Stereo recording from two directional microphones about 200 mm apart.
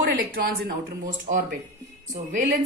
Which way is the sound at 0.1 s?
50° right (ahead or behind).